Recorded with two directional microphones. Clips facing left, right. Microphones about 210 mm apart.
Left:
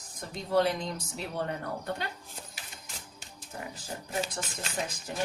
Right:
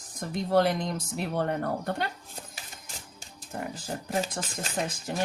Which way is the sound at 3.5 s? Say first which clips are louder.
Right 6 dB; 50° right (ahead or behind).